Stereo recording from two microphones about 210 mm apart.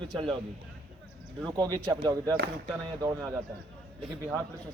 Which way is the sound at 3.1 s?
5° right (ahead or behind).